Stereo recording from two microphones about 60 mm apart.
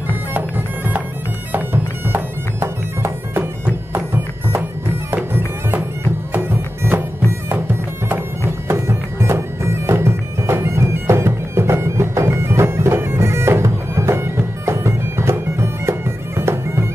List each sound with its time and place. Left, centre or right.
0.3 s bagpipes: right
3.9 s music: right
6.3 s music: right
7.2 s bagpipes: right